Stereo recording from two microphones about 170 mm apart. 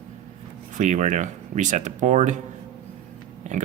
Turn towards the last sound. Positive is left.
turn(degrees=-45)  # may be behind; listen again after turning